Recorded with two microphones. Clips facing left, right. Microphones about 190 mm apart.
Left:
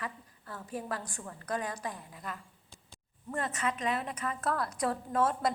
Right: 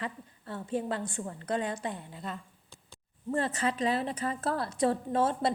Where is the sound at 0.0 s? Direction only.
25° right (ahead or behind).